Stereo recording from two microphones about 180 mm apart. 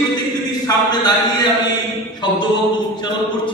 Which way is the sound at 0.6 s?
25° left (ahead or behind).